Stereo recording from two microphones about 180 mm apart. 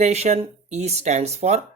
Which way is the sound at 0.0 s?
40° right (ahead or behind).